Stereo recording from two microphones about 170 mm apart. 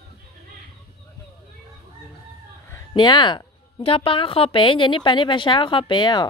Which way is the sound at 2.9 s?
25° left (ahead or behind).